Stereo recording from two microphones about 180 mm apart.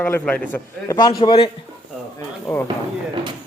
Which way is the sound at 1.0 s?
20° left (ahead or behind).